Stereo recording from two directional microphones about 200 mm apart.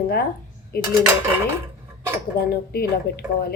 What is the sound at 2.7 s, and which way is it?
Speech, 50° left (ahead or behind).